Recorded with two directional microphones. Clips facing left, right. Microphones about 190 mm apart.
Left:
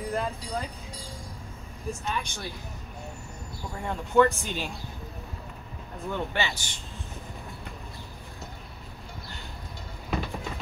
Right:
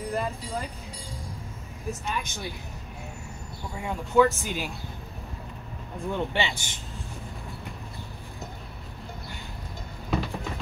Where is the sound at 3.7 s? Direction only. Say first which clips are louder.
Right 1 dB; 5° right (ahead or behind).